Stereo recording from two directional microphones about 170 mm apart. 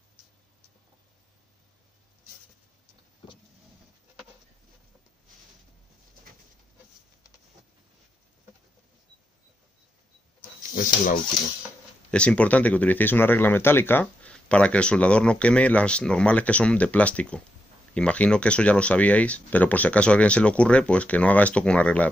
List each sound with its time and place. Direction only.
10.7 s speech: 50° left (ahead or behind)
12.1 s speech: 5° left (ahead or behind)